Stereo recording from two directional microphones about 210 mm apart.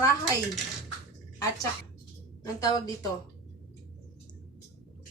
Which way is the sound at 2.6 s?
15° left (ahead or behind).